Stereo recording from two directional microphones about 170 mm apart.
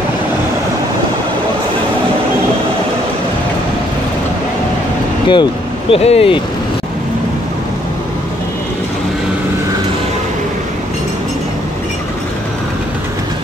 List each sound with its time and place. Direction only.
5.3 s speech: 30° left (ahead or behind)